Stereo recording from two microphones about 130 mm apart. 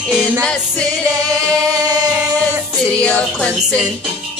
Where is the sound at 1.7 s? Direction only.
30° right (ahead or behind).